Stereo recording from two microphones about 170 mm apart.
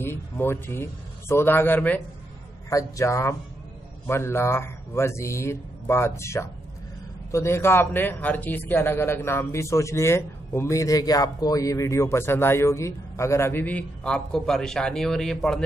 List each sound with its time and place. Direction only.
0.0 s a man's voice: 15° left (ahead or behind)